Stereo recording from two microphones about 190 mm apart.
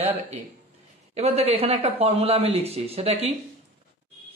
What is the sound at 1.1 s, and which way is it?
Speech, 35° right (ahead or behind).